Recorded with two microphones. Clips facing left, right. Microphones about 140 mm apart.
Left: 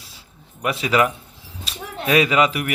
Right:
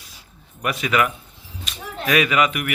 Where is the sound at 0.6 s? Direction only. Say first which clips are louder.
Left 2 dB; 30° left (ahead or behind).